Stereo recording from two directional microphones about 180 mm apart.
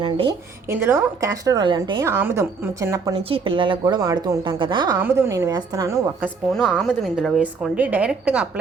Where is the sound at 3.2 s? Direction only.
30° right (ahead or behind).